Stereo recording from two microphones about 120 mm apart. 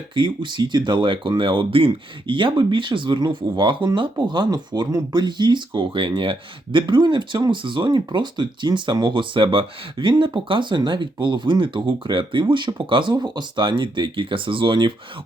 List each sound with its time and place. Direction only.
0.1 s speech: 40° right (ahead or behind)